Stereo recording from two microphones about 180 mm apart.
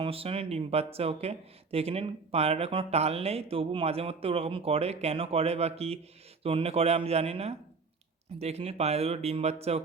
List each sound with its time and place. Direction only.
0.0 s speech: 30° right (ahead or behind)